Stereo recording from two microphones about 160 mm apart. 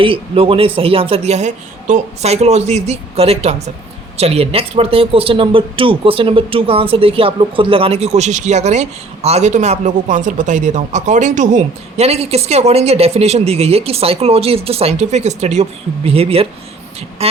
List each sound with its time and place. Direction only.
0.0 s speech: 35° right (ahead or behind)